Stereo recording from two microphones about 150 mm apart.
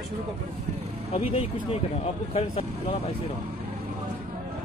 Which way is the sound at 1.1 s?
45° left (ahead or behind).